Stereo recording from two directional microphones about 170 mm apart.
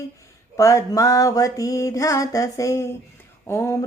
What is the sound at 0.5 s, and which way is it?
Speech, 20° left (ahead or behind).